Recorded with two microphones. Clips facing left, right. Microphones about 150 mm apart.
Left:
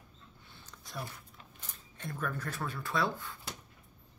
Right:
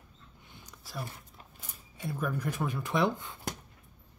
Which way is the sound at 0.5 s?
15° right (ahead or behind).